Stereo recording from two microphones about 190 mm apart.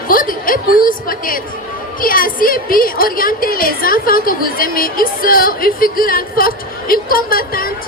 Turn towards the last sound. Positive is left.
turn(degrees=50)  # may be behind; listen again after turning